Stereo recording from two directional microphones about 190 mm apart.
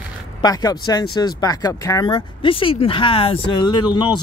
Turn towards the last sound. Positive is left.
turn(degrees=25)  # may be behind; listen again after turning